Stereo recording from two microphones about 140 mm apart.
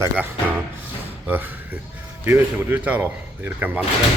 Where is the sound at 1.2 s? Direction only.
15° right (ahead or behind).